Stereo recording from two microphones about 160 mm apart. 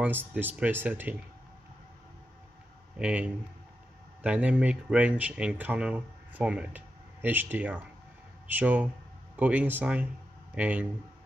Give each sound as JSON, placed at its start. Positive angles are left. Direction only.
{"t": 0.3, "sound": "speech", "side_deg": -10}
{"t": 3.0, "sound": "speech", "side_deg": -5}